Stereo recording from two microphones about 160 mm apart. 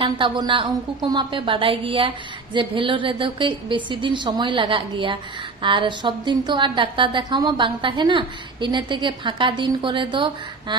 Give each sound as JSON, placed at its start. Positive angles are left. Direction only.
{"t": 0.0, "sound": "a woman's voice", "side_deg": -30}